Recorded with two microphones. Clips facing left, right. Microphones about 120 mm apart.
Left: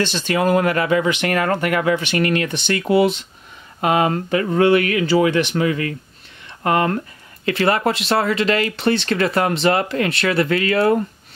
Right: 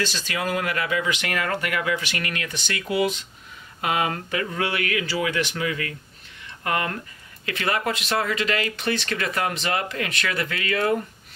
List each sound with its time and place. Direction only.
0.0 s speech: 30° left (ahead or behind)
3.8 s speech: 35° left (ahead or behind)